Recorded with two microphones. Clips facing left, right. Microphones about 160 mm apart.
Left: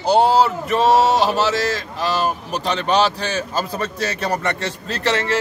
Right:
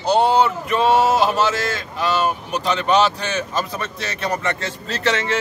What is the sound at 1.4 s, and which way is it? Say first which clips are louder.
Speech: left 2 dB; 35° left (ahead or behind).